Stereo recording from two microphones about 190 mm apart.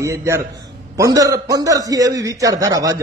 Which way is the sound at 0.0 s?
15° right (ahead or behind).